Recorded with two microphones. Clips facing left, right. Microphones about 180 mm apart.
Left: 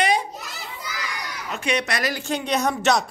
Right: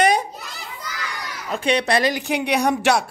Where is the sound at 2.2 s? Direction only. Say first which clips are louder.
Right 3 dB; 15° right (ahead or behind).